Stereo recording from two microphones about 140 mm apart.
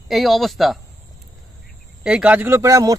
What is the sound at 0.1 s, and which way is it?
Speech, centre (ahead or behind).